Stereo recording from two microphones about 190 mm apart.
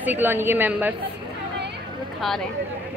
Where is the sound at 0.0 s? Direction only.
10° right (ahead or behind).